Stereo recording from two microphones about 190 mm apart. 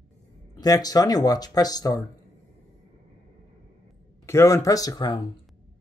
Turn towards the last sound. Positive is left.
turn(degrees=20)  # may be behind; listen again after turning